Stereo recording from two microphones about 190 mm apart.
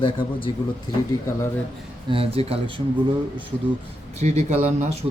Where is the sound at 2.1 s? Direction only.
30° right (ahead or behind).